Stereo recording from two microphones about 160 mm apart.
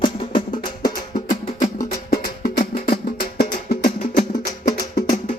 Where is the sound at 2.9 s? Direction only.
70° left (ahead or behind).